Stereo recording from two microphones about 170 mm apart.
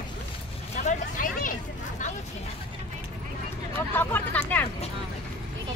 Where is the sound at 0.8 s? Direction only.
55° left (ahead or behind).